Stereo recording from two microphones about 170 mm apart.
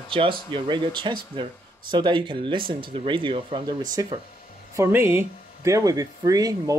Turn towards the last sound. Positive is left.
turn(degrees=-20)  # may be behind; listen again after turning